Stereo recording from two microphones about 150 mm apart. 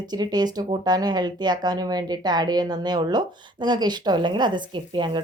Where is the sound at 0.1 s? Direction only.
25° right (ahead or behind).